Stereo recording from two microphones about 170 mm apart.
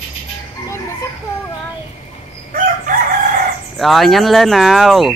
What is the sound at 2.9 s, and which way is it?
Chicken, 50° right (ahead or behind).